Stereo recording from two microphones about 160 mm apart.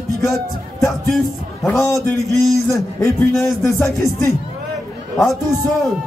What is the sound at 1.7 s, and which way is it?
Speech, 15° left (ahead or behind).